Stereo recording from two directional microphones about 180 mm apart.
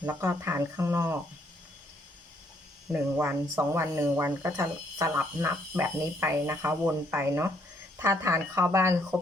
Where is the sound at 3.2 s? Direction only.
10° right (ahead or behind).